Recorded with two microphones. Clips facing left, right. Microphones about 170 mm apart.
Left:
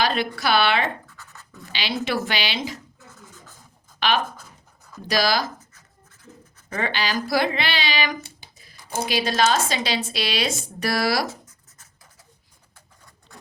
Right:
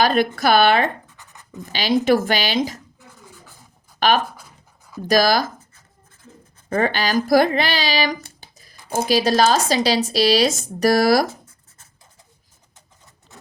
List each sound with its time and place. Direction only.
0.0 s a woman's voice: 45° right (ahead or behind)
1.0 s scratch: 15° right (ahead or behind)
2.0 s speech: 45° right (ahead or behind)
4.0 s speech: 45° right (ahead or behind)
6.7 s speech: 50° right (ahead or behind)
13.3 s a sound: 20° right (ahead or behind)